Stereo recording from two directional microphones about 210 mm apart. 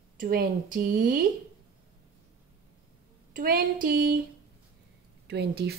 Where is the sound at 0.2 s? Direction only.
45° right (ahead or behind).